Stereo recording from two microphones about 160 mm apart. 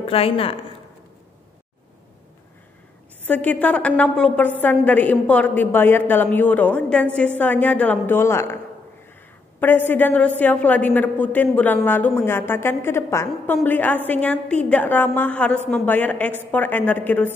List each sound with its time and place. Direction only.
0.0 s speech: 35° left (ahead or behind)
3.3 s a woman's voice: 10° left (ahead or behind)
9.6 s a woman's voice: 10° left (ahead or behind)